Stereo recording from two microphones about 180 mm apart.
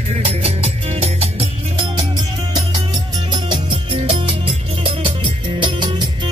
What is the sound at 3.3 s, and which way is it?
Music, 25° right (ahead or behind).